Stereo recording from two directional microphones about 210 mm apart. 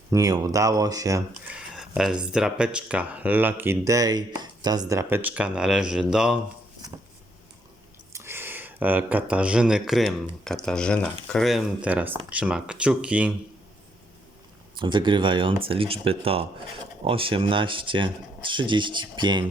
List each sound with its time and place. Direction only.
0.1 s speech: 15° right (ahead or behind)
1.5 s speech: 5° right (ahead or behind)
8.1 s speech: 10° right (ahead or behind)
14.8 s speech: 20° right (ahead or behind)